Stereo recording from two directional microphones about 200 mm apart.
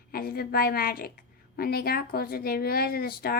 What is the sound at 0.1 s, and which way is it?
A woman's voice, 50° left (ahead or behind).